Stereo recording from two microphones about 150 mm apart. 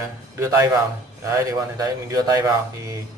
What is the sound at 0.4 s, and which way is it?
A man's voice, 20° right (ahead or behind).